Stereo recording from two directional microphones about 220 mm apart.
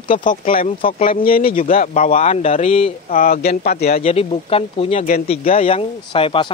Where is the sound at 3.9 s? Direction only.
30° left (ahead or behind).